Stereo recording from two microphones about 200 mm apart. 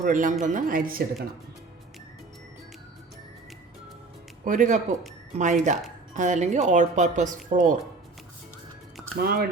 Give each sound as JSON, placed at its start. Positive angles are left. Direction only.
{"t": 0.0, "sound": "speech", "side_deg": -40}
{"t": 4.4, "sound": "speech", "side_deg": -40}
{"t": 9.1, "sound": "speech", "side_deg": -50}